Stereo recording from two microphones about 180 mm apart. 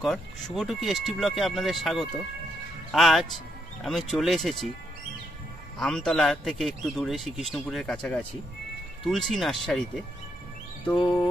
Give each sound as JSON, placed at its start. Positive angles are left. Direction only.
{"t": 0.0, "sound": "a man's voice", "side_deg": 0}
{"t": 5.8, "sound": "a man's voice", "side_deg": 5}
{"t": 11.0, "sound": "music", "side_deg": 25}